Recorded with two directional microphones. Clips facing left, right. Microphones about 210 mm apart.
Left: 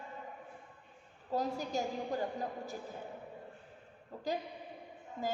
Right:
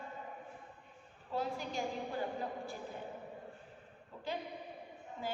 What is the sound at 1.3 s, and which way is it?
Speech, 40° left (ahead or behind).